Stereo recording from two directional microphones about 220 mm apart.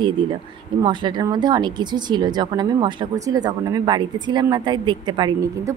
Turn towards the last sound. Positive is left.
turn(degrees=-20)  # may be behind; listen again after turning